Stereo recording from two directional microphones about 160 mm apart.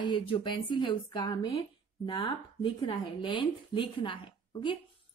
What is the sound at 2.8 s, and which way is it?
A woman's voice, 30° left (ahead or behind).